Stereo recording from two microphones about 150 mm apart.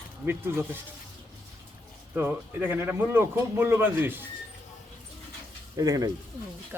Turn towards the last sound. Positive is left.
turn(degrees=-25)  # may be behind; listen again after turning